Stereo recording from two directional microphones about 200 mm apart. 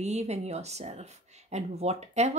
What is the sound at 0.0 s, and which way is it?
Speech, 35° right (ahead or behind).